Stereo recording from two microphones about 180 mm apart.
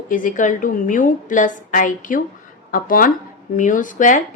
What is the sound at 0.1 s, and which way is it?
A woman's voice, 45° left (ahead or behind).